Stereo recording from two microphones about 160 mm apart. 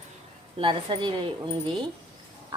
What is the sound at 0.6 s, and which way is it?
Speech, 30° right (ahead or behind).